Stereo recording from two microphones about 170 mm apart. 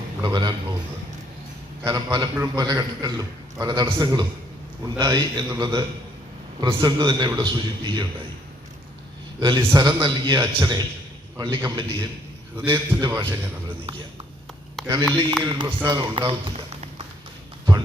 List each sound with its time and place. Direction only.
0.2 s a man's voice: 25° right (ahead or behind)
1.8 s a man's voice: 20° right (ahead or behind)
9.4 s a man's voice: 25° right (ahead or behind)
14.8 s a sound: 5° left (ahead or behind)
15.1 s a man's voice: 25° right (ahead or behind)